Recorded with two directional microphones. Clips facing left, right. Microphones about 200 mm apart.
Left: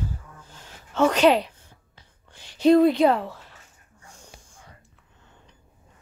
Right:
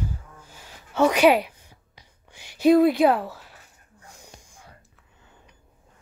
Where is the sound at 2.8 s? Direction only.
5° right (ahead or behind).